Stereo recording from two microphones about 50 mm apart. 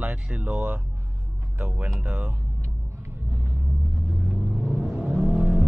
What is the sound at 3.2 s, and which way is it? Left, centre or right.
Rumble, right.